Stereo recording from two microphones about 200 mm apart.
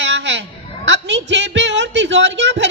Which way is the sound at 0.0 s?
60° right (ahead or behind).